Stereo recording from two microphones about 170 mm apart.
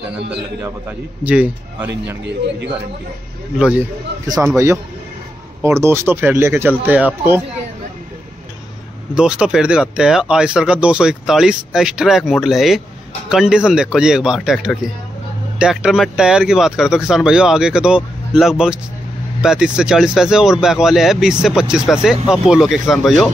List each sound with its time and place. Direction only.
0.6 s a man's voice: 15° right (ahead or behind)
3.5 s a man's voice: 5° right (ahead or behind)
9.1 s speech: 5° right (ahead or behind)